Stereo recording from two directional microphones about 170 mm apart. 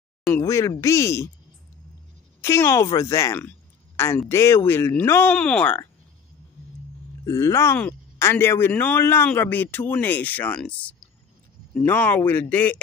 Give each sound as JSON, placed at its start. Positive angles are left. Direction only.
{"t": 0.4, "sound": "speech", "side_deg": 20}
{"t": 2.4, "sound": "speech", "side_deg": 15}
{"t": 7.2, "sound": "speech", "side_deg": 15}